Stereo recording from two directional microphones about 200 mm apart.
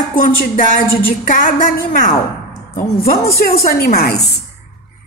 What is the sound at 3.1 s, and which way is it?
A woman's voice, 50° left (ahead or behind).